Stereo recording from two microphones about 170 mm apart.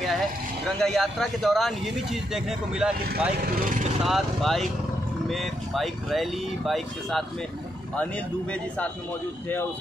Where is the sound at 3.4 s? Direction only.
55° right (ahead or behind).